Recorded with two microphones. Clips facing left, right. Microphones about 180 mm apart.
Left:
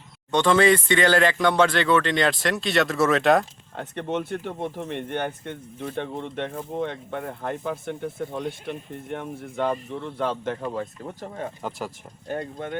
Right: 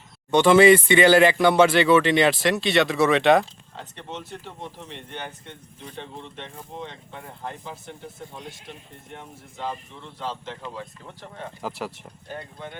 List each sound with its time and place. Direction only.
0.3 s speech: 10° right (ahead or behind)
3.8 s speech: 55° left (ahead or behind)